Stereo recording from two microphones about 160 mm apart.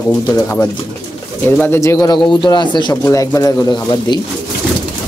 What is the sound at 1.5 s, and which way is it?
Speech, 15° left (ahead or behind).